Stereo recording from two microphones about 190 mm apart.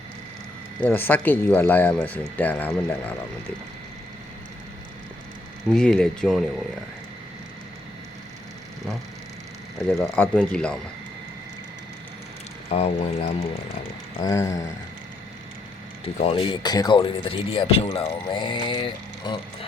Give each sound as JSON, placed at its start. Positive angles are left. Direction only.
{"t": 0.8, "sound": "speech", "side_deg": 10}
{"t": 5.7, "sound": "speech", "side_deg": 5}
{"t": 10.0, "sound": "speech", "side_deg": 5}
{"t": 12.7, "sound": "speech", "side_deg": 30}
{"t": 14.2, "sound": "speech", "side_deg": 15}
{"t": 16.1, "sound": "speech", "side_deg": 30}